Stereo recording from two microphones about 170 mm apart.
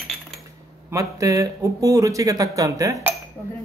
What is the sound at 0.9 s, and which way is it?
A man's voice, 20° right (ahead or behind).